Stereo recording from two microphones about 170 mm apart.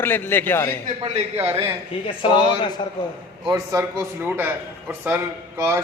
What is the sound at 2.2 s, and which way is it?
Speech, 30° left (ahead or behind).